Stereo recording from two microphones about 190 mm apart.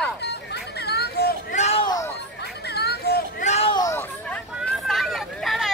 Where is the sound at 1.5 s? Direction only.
35° left (ahead or behind).